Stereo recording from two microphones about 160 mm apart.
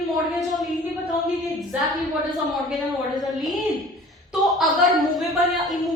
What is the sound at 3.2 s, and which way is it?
A woman's voice, centre (ahead or behind).